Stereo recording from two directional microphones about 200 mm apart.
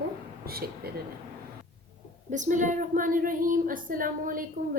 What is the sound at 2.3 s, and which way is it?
A woman's voice, 40° right (ahead or behind).